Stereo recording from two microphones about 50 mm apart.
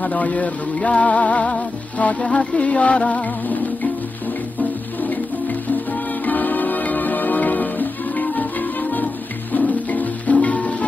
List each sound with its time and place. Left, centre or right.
0.0 s music: left
5.0 s music: left